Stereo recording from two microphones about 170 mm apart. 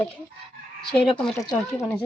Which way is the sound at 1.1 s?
Centre (ahead or behind).